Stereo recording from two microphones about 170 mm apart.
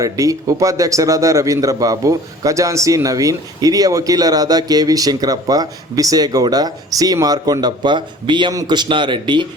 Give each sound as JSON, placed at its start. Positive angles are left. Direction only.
{"t": 0.0, "sound": "a man's voice", "side_deg": -20}